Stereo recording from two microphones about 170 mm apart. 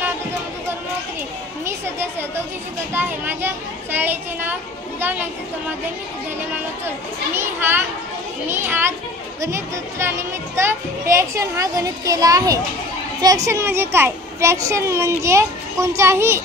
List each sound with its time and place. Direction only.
1.6 s a sound: 15° right (ahead or behind)
2.9 s a child's voice: 10° right (ahead or behind)
7.3 s a child's voice: 10° right (ahead or behind)